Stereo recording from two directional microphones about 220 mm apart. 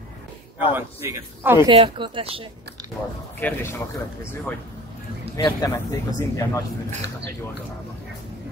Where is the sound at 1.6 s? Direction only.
25° right (ahead or behind).